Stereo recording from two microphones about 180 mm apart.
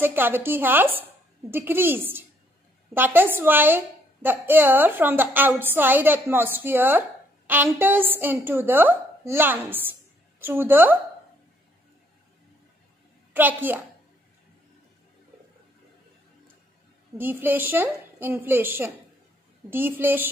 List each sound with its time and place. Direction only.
0.0 s a woman's voice: 10° right (ahead or behind)
13.3 s a woman's voice: 10° right (ahead or behind)
17.2 s a woman's voice: 10° right (ahead or behind)